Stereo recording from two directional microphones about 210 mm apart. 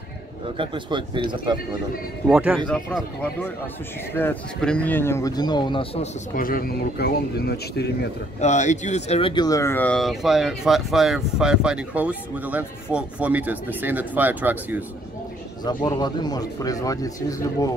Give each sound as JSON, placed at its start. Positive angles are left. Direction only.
{"t": 0.6, "sound": "speech", "side_deg": -20}
{"t": 2.2, "sound": "speech", "side_deg": -5}
{"t": 6.3, "sound": "speech", "side_deg": 40}
{"t": 8.4, "sound": "speech", "side_deg": 35}
{"t": 15.6, "sound": "speech", "side_deg": 20}